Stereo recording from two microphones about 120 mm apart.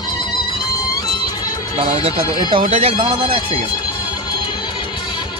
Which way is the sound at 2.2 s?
35° left (ahead or behind).